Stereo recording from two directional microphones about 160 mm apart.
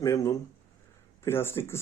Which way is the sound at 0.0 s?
20° left (ahead or behind).